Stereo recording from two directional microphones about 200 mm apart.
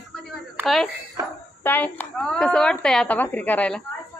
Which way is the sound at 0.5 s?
Centre (ahead or behind).